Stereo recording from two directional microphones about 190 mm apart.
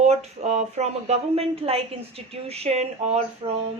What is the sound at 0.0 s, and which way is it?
A woman's voice, 35° right (ahead or behind).